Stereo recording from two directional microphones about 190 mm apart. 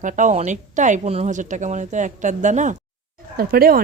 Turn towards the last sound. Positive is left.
turn(degrees=-50)  # may be behind; listen again after turning